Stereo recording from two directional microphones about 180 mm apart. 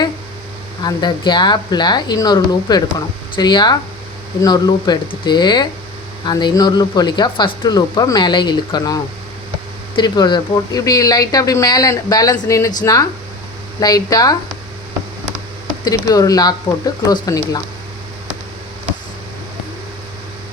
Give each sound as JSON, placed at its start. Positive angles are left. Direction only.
{"t": 0.8, "sound": "speech", "side_deg": 25}
{"t": 15.8, "sound": "speech", "side_deg": 20}